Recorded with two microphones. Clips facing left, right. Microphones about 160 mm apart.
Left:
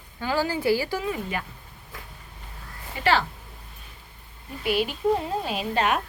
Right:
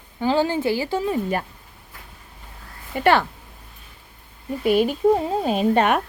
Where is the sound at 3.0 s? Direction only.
55° right (ahead or behind).